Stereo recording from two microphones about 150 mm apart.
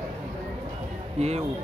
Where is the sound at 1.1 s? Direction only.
45° right (ahead or behind).